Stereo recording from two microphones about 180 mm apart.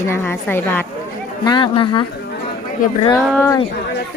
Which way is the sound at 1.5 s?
25° left (ahead or behind).